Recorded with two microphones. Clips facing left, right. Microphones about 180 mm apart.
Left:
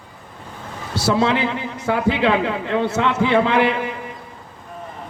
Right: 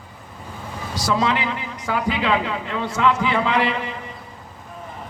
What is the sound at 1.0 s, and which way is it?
A man's voice, 25° left (ahead or behind).